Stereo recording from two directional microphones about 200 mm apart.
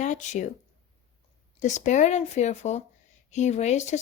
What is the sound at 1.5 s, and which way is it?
Speech, 35° left (ahead or behind).